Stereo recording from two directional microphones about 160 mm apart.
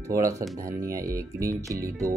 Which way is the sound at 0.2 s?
20° right (ahead or behind).